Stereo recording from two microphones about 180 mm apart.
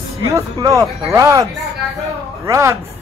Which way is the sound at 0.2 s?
15° right (ahead or behind).